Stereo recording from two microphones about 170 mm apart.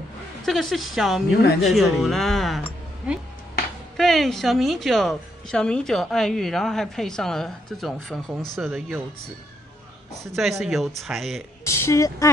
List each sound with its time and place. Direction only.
0.5 s a woman's voice: centre (ahead or behind)
3.9 s a woman's voice: centre (ahead or behind)
10.3 s a woman's voice: centre (ahead or behind)
11.6 s speech: 15° left (ahead or behind)